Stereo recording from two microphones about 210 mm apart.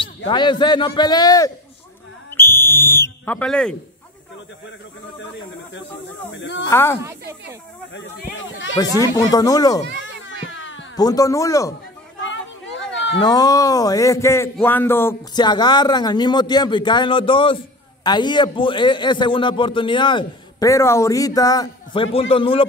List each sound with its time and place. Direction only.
0.0 s a man's voice: 20° left (ahead or behind); by 3.7 s 5° left (ahead or behind)
6.3 s speech: 60° left (ahead or behind)
6.7 s speech: 10° left (ahead or behind)
7.9 s speech: 55° left (ahead or behind)
9.0 s speech: 15° left (ahead or behind)
10.5 s cat: 65° left (ahead or behind)
11.0 s speech: 15° left (ahead or behind)
13.2 s a man's voice: 20° left (ahead or behind)